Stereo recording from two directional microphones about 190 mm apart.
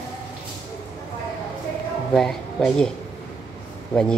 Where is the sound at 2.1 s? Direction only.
5° left (ahead or behind).